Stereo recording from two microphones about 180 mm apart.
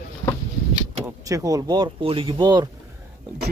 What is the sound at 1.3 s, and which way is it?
Speech, 20° right (ahead or behind).